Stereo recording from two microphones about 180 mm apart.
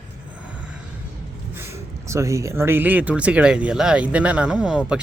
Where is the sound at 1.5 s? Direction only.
15° right (ahead or behind).